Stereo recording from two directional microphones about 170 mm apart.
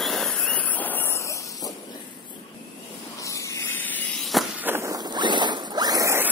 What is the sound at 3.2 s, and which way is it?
Spray, 20° left (ahead or behind).